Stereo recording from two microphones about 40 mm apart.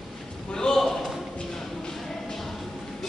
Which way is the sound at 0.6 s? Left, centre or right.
Centre.